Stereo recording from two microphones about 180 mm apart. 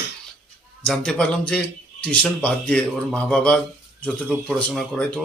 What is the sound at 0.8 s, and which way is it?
Speech, 5° left (ahead or behind).